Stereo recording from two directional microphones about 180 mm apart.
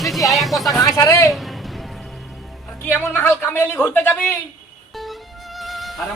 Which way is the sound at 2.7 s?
10° left (ahead or behind).